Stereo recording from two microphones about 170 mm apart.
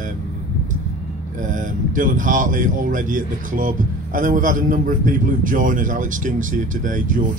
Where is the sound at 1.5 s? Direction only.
50° right (ahead or behind).